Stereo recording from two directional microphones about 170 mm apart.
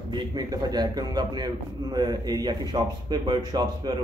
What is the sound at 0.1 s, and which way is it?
A man's voice, 25° right (ahead or behind).